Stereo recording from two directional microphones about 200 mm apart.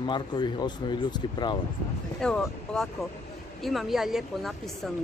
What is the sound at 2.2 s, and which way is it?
Speech, 5° left (ahead or behind).